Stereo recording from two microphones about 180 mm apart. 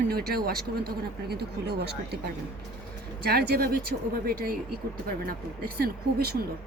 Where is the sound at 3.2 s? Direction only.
65° right (ahead or behind).